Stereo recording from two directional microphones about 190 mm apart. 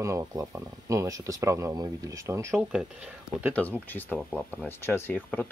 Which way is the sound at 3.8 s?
10° left (ahead or behind).